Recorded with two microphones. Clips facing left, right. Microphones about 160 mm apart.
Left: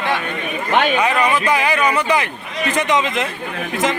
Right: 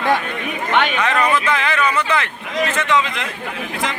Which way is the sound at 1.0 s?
10° left (ahead or behind).